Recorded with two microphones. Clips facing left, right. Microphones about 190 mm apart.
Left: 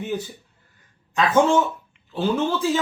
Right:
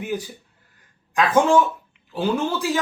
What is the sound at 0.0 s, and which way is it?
Speech, 10° right (ahead or behind).